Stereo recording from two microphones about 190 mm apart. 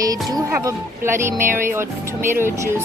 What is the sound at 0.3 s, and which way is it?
Music, 15° right (ahead or behind).